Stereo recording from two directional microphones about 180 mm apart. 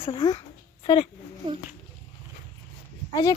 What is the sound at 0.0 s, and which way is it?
Speech, 25° left (ahead or behind).